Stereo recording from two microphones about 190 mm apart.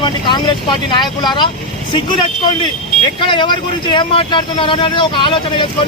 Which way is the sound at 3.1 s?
25° left (ahead or behind).